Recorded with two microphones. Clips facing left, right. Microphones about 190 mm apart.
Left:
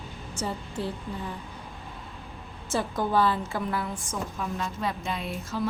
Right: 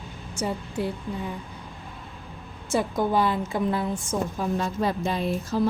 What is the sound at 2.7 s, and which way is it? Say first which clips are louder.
A woman's voice: right 2 dB; 15° right (ahead or behind).